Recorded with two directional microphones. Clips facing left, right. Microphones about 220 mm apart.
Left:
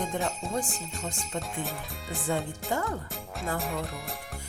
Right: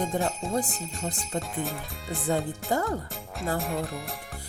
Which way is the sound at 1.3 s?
Centre (ahead or behind).